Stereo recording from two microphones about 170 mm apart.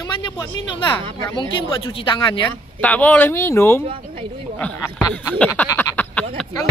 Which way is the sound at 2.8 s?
10° left (ahead or behind).